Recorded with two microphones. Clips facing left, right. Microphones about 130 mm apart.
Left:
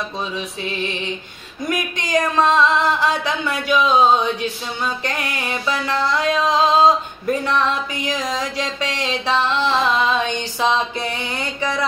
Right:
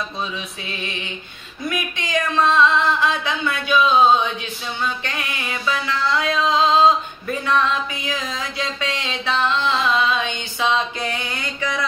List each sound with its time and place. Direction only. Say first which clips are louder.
1.7 s speech: left 3 dB; 40° left (ahead or behind)
11.1 s mantra: left 2 dB; 30° left (ahead or behind)